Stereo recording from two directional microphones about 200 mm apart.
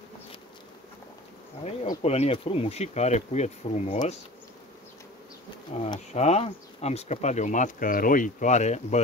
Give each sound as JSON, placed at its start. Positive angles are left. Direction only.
{"t": 1.6, "sound": "speech", "side_deg": 35}
{"t": 5.7, "sound": "speech", "side_deg": 35}